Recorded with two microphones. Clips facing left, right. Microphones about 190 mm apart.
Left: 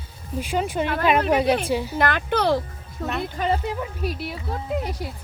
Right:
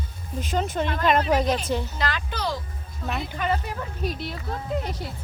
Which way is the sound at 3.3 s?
35° left (ahead or behind).